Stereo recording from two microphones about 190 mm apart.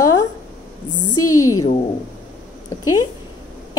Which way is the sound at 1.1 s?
15° left (ahead or behind).